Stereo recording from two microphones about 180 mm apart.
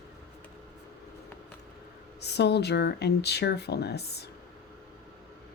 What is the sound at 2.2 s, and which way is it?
Speech, 65° left (ahead or behind).